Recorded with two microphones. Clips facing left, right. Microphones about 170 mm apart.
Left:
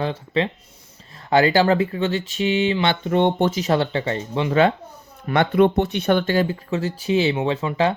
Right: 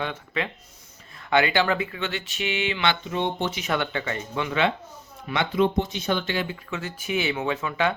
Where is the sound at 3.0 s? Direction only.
60° left (ahead or behind).